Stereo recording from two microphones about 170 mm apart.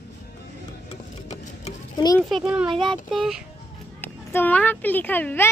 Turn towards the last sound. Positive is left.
turn(degrees=10)  # may be behind; listen again after turning